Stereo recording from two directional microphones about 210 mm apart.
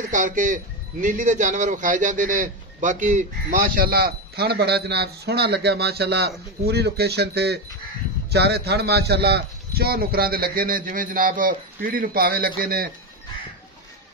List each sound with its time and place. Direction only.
0.1 s a man's voice: 40° right (ahead or behind)